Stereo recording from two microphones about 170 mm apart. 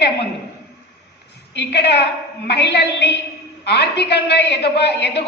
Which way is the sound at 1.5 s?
85° left.